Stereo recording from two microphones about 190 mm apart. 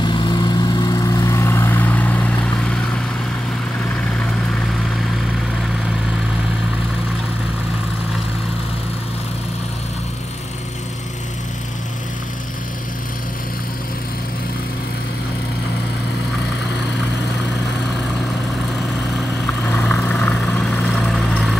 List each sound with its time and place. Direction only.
0.0 s vehicle: 25° left (ahead or behind); by 2.5 s 10° left (ahead or behind)
19.8 s vehicle: 5° left (ahead or behind)